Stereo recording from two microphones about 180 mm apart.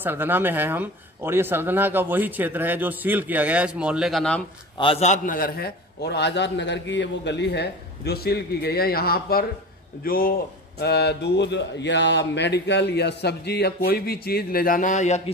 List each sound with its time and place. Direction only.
0.0 s speech: 10° right (ahead or behind)
4.7 s a man's voice: 30° left (ahead or behind); by 10.3 s 55° left (ahead or behind)
10.8 s a man's voice: 65° left (ahead or behind); by 15.3 s 40° left (ahead or behind)